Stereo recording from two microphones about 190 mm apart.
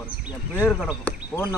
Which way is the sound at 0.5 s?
10° left (ahead or behind).